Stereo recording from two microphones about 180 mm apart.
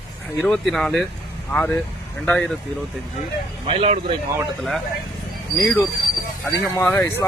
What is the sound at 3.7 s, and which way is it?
Speech, 35° right (ahead or behind).